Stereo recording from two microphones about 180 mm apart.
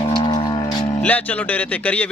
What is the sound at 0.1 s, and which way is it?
Music, 25° left (ahead or behind).